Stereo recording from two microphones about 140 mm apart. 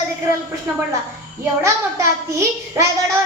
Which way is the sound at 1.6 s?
20° right (ahead or behind).